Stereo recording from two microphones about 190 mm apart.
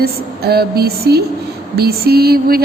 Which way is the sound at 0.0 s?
55° right (ahead or behind).